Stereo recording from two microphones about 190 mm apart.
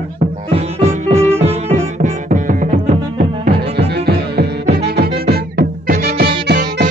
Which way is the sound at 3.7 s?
60° right (ahead or behind).